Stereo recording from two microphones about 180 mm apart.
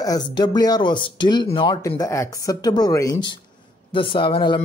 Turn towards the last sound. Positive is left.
turn(degrees=25)  # may be behind; listen again after turning